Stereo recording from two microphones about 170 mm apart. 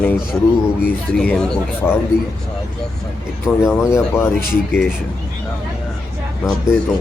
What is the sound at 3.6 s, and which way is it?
Speech, 10° left (ahead or behind).